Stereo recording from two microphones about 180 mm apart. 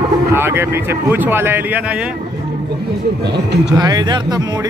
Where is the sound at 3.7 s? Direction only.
20° right (ahead or behind).